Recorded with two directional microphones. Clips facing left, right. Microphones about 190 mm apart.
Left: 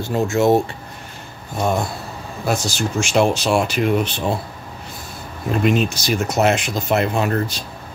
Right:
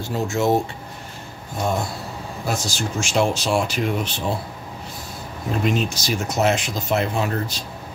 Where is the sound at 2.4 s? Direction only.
65° left (ahead or behind).